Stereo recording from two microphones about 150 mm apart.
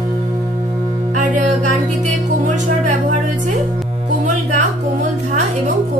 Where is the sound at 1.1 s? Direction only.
55° right (ahead or behind).